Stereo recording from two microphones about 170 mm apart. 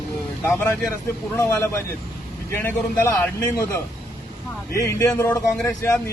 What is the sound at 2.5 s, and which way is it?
A man's voice, 10° left (ahead or behind).